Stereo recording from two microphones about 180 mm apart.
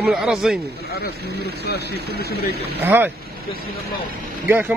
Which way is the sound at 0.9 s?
65° left (ahead or behind).